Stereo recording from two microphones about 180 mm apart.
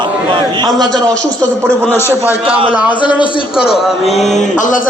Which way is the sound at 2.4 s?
30° right (ahead or behind).